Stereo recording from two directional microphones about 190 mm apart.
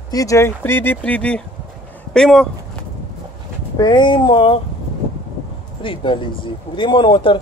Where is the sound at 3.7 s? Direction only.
20° left (ahead or behind).